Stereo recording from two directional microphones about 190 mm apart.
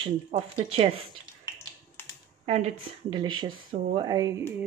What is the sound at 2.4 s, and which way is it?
Speech, 35° right (ahead or behind).